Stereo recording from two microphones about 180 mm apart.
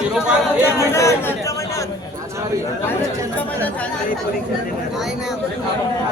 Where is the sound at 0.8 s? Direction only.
15° left (ahead or behind).